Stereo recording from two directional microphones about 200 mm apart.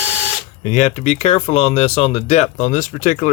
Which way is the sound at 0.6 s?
40° left (ahead or behind).